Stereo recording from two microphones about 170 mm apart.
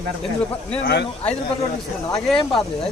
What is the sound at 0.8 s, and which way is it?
Speech, 80° left.